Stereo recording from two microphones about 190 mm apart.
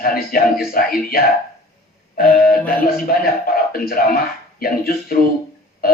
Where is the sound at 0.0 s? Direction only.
50° left (ahead or behind).